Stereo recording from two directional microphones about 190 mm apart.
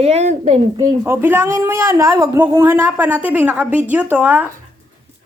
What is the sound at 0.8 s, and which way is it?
Speech, 15° right (ahead or behind).